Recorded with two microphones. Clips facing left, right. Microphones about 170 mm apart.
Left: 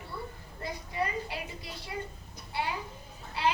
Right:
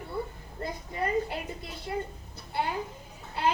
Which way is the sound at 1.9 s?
50° right (ahead or behind).